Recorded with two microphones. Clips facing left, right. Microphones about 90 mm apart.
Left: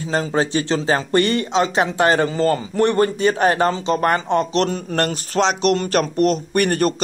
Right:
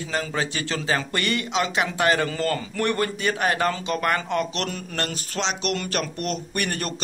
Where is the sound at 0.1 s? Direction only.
35° left (ahead or behind).